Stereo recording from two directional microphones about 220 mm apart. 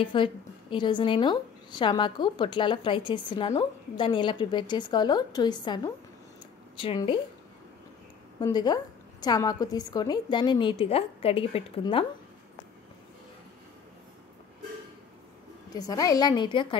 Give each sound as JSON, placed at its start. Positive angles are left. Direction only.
{"t": 0.0, "sound": "a woman's voice", "side_deg": 20}
{"t": 6.8, "sound": "a woman's voice", "side_deg": 25}
{"t": 8.4, "sound": "a woman's voice", "side_deg": 20}
{"t": 15.7, "sound": "a woman's voice", "side_deg": 15}